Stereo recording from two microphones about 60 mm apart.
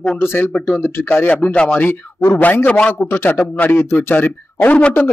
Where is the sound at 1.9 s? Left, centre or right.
Left.